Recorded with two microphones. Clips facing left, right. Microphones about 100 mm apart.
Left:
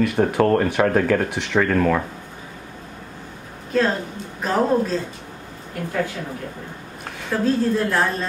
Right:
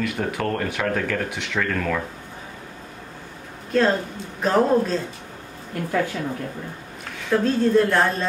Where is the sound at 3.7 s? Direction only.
Centre (ahead or behind).